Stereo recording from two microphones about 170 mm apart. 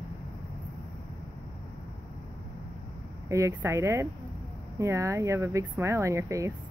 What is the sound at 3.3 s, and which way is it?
Speech, 20° right (ahead or behind).